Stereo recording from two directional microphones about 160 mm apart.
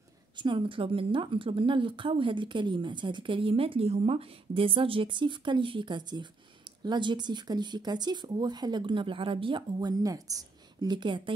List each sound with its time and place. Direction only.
0.4 s speech: 30° right (ahead or behind)